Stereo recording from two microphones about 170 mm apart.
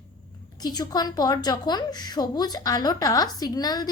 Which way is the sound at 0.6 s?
25° left (ahead or behind).